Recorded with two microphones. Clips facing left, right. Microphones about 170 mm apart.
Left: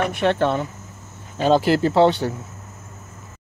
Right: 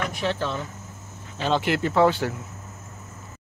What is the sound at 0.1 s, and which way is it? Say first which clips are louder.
Speech: left 8 dB; 60° left (ahead or behind).